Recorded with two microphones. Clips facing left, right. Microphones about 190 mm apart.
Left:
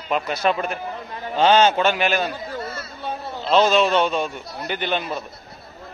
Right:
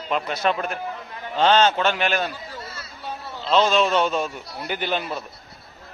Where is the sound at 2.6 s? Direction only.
55° left (ahead or behind).